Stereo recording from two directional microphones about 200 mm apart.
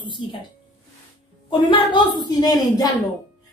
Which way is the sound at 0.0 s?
25° left (ahead or behind).